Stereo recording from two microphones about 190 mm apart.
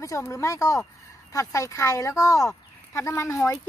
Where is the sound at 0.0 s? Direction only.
15° left (ahead or behind).